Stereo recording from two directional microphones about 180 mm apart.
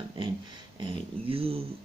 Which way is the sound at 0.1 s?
25° right (ahead or behind).